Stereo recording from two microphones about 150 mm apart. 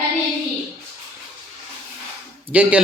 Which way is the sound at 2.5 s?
10° right (ahead or behind).